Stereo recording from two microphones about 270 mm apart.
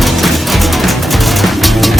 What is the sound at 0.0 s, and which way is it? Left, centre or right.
Music, centre.